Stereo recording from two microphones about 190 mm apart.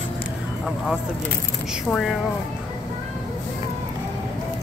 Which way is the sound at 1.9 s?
Centre (ahead or behind).